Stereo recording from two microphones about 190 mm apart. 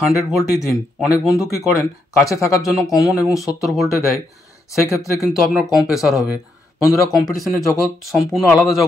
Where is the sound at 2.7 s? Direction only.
Centre (ahead or behind).